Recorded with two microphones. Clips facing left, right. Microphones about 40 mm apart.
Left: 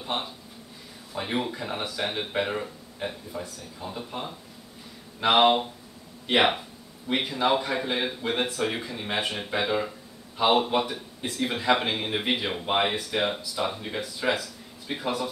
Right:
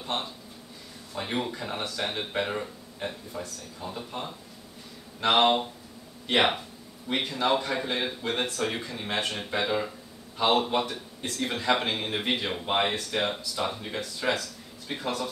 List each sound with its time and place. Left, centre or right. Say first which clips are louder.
0.0 s a man's voice: left 1 dB; centre